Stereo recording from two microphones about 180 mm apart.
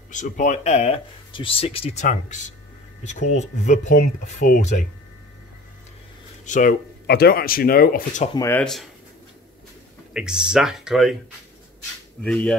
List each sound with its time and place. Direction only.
0.1 s speech: 45° left (ahead or behind)
6.4 s speech: 45° left (ahead or behind)
8.4 s speech: 15° left (ahead or behind)
10.1 s speech: 5° right (ahead or behind)
12.2 s speech: 5° left (ahead or behind)